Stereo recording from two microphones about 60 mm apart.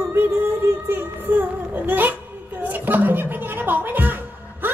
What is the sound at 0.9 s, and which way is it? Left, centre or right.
Music, right.